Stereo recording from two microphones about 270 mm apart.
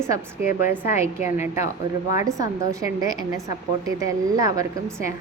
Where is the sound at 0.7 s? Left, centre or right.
Centre.